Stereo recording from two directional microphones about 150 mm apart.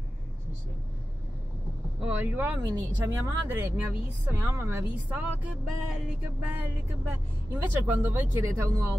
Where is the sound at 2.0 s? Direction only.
10° right (ahead or behind).